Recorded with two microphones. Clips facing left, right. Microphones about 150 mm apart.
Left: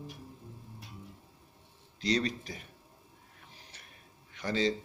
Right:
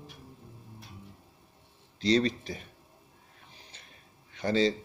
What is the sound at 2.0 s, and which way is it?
Speech, 30° right (ahead or behind).